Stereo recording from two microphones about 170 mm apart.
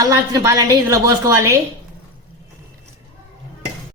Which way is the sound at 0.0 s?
20° right (ahead or behind).